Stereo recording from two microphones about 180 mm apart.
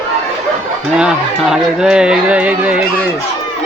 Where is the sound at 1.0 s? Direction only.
5° right (ahead or behind).